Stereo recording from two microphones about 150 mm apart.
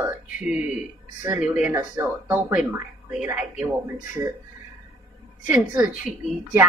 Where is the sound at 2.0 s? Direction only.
15° right (ahead or behind).